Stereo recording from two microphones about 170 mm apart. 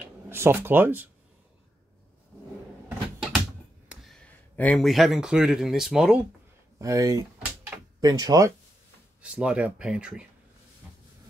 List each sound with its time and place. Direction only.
0.3 s speech: 15° right (ahead or behind)
3.9 s a man's voice: centre (ahead or behind)
6.8 s speech: 20° right (ahead or behind)
9.2 s speech: 5° right (ahead or behind)